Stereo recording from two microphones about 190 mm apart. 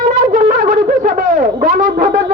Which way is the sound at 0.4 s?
45° right (ahead or behind).